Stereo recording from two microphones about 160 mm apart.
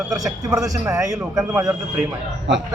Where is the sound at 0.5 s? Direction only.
20° right (ahead or behind).